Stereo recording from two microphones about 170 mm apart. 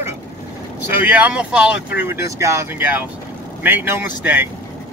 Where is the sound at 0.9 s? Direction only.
10° right (ahead or behind).